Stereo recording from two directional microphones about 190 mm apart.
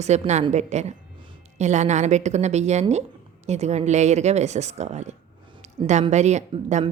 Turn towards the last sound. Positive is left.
turn(degrees=-35)  # may be behind; listen again after turning